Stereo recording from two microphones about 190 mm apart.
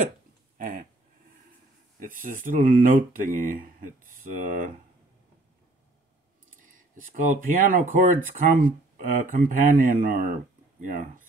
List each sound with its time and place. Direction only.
0.6 s a sound: 45° right (ahead or behind)
2.0 s speech: 45° right (ahead or behind)
7.0 s speech: 45° right (ahead or behind)